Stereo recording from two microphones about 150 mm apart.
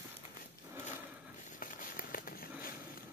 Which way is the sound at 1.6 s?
65° left (ahead or behind).